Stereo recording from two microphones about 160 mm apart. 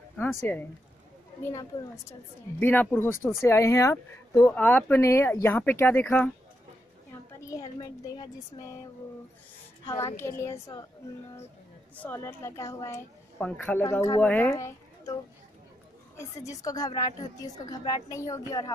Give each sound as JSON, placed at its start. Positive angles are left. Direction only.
{"t": 0.2, "sound": "speech", "side_deg": 15}
{"t": 7.4, "sound": "a woman's voice", "side_deg": 20}
{"t": 9.8, "sound": "speech", "side_deg": 15}
{"t": 12.0, "sound": "speech", "side_deg": 15}
{"t": 16.2, "sound": "a woman's voice", "side_deg": 20}